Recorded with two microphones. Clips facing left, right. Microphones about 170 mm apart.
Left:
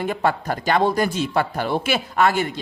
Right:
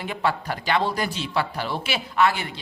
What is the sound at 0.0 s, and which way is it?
Speech, 50° left (ahead or behind).